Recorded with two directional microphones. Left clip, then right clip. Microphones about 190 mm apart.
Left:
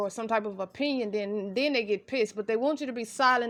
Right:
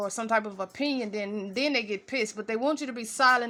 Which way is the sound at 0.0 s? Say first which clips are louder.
Right 1 dB; 30° left (ahead or behind).